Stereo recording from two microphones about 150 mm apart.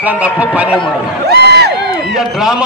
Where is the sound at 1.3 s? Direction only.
90° right.